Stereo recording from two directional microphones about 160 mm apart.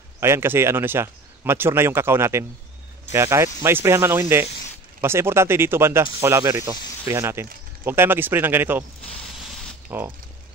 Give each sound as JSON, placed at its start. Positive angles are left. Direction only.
{"t": 0.2, "sound": "speech", "side_deg": -15}
{"t": 9.8, "sound": "speech", "side_deg": -15}